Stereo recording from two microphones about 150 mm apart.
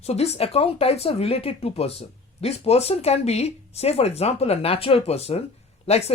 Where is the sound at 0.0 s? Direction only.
45° left (ahead or behind).